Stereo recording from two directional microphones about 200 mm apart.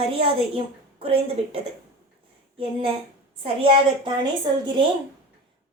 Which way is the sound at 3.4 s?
25° right (ahead or behind).